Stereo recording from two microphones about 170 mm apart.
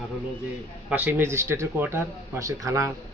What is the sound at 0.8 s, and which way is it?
Speech, 10° right (ahead or behind).